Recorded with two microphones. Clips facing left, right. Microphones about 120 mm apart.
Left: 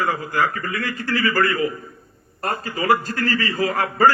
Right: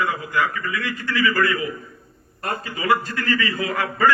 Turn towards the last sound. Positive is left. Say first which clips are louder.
# left 3 dB
turn(degrees=30)  # may be behind; listen again after turning